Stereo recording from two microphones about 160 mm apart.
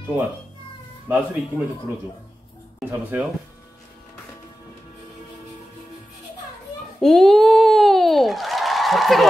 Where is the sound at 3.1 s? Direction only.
10° right (ahead or behind).